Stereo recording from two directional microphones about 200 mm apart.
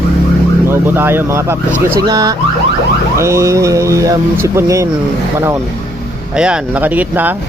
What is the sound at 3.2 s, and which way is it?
Speech, 15° right (ahead or behind).